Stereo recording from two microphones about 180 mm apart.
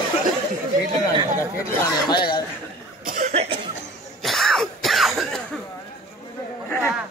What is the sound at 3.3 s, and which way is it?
Cough, 35° right (ahead or behind).